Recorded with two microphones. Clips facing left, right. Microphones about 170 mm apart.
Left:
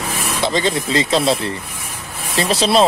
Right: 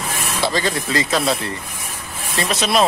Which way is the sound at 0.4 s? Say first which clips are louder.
Left 2 dB; 20° left (ahead or behind).